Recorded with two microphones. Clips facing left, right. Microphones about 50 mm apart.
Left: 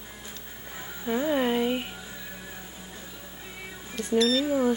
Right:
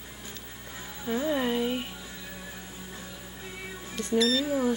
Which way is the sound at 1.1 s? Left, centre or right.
Centre.